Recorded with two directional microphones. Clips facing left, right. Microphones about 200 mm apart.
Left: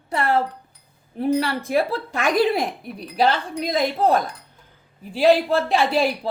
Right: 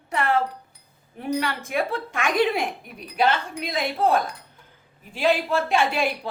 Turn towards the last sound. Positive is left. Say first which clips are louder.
# left 3 dB
turn(degrees=35)  # may be behind; listen again after turning